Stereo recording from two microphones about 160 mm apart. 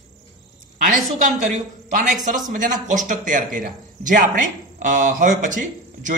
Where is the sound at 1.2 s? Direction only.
55° right (ahead or behind).